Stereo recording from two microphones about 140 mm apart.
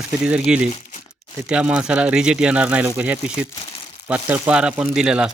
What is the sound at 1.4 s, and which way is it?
Speech, 10° right (ahead or behind).